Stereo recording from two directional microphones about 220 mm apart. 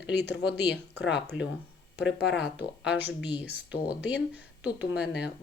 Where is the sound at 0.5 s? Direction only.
50° left (ahead or behind).